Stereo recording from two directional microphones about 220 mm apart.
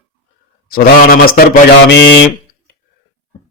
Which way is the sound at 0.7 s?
40° left (ahead or behind).